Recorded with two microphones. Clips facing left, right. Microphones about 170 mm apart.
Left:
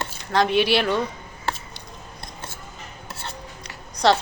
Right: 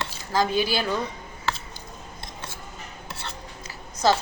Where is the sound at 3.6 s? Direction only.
70° left (ahead or behind).